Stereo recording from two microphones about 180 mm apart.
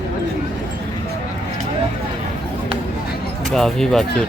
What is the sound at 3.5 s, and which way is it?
Speech, centre (ahead or behind).